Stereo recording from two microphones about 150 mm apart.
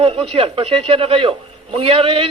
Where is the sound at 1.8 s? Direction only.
40° right (ahead or behind).